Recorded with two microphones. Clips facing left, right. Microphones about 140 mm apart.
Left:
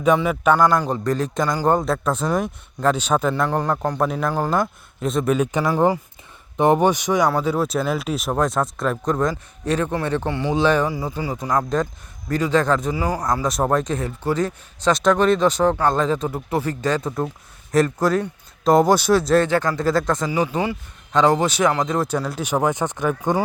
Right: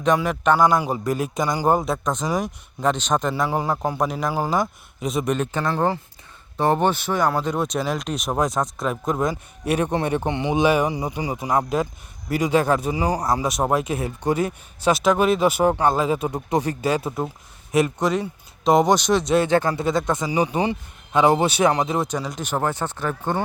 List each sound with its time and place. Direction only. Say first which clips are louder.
0.2 s speech: left 2 dB; 5° left (ahead or behind)
0.5 s speech: right 1 dB; 10° right (ahead or behind); by 7.3 s 15° left (ahead or behind)
7.3 s speech: left 2 dB; centre (ahead or behind)
9.3 s speech: even; 15° right (ahead or behind)
18.0 s speech: left 2 dB; centre (ahead or behind)
19.5 s speech: even; 20° right (ahead or behind)
22.1 s speech: left 3 dB; 5° left (ahead or behind)